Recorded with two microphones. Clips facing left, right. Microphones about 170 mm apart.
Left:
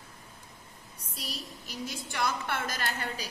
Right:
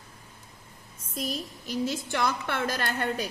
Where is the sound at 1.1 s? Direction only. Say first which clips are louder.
Right 9 dB; 45° right (ahead or behind).